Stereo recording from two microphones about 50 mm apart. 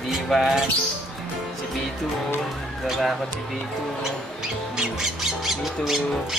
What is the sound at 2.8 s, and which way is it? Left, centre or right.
Speech, centre.